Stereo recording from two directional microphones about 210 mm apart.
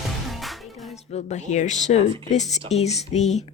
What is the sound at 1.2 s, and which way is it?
Speech, 35° left (ahead or behind).